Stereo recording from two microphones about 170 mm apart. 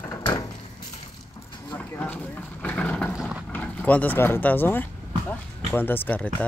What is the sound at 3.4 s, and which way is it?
Speech, 10° left (ahead or behind).